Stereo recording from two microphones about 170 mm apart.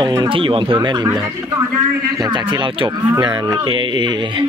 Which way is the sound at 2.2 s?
25° right (ahead or behind).